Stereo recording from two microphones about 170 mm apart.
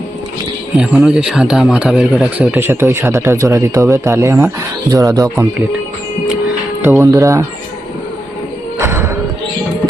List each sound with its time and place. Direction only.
0.8 s speech: 5° right (ahead or behind)
2.6 s speech: 15° right (ahead or behind)
6.8 s speech: 20° right (ahead or behind)
8.8 s music: 15° right (ahead or behind)